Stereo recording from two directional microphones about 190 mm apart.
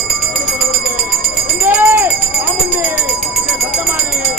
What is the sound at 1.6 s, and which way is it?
Jingle bell, 10° right (ahead or behind).